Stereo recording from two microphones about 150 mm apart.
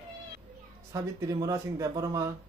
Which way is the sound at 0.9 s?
25° right (ahead or behind).